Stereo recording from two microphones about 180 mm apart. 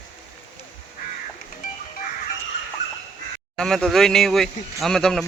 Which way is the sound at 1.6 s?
50° left (ahead or behind).